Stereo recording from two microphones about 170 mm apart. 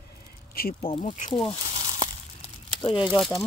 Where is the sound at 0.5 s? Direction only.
60° left (ahead or behind).